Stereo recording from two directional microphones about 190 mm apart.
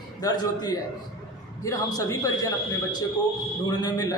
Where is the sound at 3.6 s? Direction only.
20° left (ahead or behind).